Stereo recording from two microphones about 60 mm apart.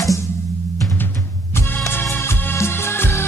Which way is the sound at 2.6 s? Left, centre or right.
Left.